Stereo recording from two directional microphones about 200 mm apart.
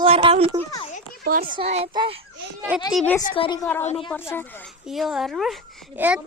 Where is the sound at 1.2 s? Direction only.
45° right (ahead or behind).